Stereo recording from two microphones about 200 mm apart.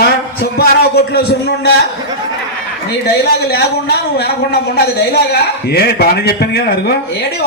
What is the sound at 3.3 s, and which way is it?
Speech, 50° left (ahead or behind).